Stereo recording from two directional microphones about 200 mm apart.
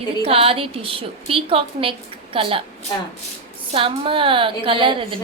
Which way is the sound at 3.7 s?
25° right (ahead or behind).